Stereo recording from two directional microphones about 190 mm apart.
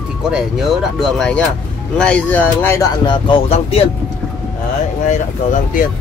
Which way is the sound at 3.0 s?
30° left (ahead or behind).